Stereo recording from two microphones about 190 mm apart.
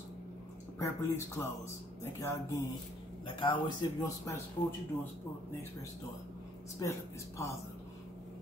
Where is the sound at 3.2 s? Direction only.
25° left (ahead or behind).